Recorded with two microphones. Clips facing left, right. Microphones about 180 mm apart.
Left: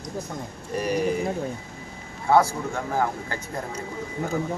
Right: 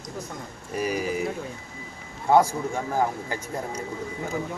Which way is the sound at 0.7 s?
5° right (ahead or behind).